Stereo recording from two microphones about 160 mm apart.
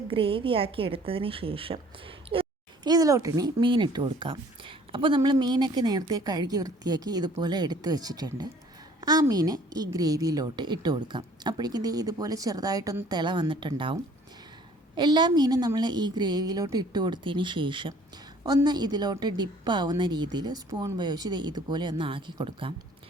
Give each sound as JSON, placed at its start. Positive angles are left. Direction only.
{"t": 0.1, "sound": "a woman's voice", "side_deg": -35}